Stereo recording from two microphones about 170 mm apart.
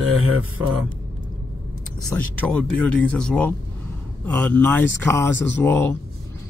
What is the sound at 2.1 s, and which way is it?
Speech, 5° left (ahead or behind).